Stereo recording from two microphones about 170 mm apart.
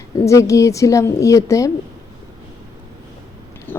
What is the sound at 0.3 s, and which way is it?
A woman's voice, 20° left (ahead or behind).